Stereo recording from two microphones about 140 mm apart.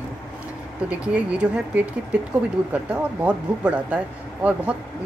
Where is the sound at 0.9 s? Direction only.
10° right (ahead or behind).